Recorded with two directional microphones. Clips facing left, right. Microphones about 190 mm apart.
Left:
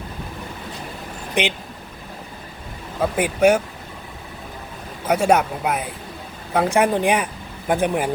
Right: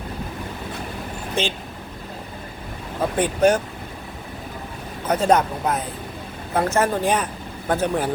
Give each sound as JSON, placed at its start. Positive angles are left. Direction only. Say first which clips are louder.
{"t": 1.4, "sound": "speech", "louder": "left 2 dB", "side_deg": 15}
{"t": 3.2, "sound": "speech", "louder": "left 1 dB", "side_deg": 10}
{"t": 5.0, "sound": "speech", "louder": "left 1 dB", "side_deg": 10}